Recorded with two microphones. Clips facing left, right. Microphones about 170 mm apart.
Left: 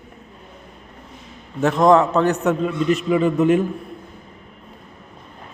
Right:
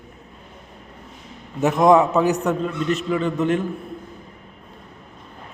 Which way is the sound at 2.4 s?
5° left (ahead or behind).